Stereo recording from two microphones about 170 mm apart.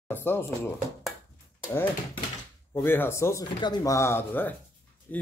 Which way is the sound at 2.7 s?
15° left (ahead or behind).